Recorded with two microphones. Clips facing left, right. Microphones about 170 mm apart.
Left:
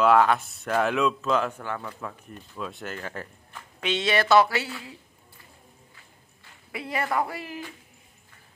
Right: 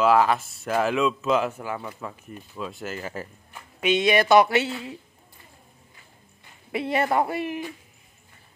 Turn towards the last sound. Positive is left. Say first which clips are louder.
# right 5 dB
turn(degrees=-20)  # may be behind; listen again after turning